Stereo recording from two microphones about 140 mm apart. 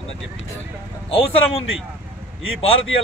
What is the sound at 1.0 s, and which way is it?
Speech, 40° left (ahead or behind).